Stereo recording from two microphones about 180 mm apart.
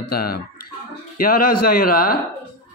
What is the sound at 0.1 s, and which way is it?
Speech, 55° left (ahead or behind).